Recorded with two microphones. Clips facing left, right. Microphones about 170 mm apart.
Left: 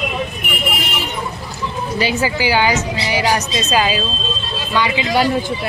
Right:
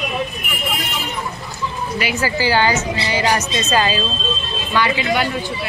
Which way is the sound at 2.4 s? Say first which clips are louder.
Right 1 dB; 15° left (ahead or behind).